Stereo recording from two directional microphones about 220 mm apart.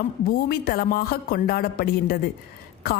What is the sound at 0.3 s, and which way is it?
A woman's voice, 40° left (ahead or behind).